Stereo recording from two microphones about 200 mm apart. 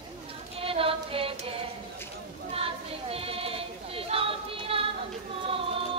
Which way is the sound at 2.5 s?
30° right (ahead or behind).